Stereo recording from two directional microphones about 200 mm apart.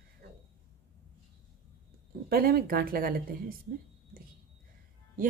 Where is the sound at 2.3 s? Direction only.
50° right (ahead or behind).